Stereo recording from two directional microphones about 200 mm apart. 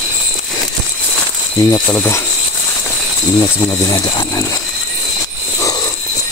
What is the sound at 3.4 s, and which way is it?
Speech, 15° left (ahead or behind).